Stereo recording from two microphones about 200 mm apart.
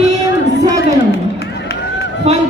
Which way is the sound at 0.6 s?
20° right (ahead or behind).